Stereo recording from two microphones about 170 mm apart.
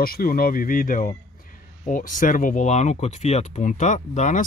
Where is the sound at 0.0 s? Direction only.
60° left (ahead or behind).